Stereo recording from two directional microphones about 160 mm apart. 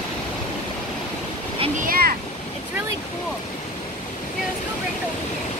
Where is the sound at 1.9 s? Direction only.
70° right (ahead or behind).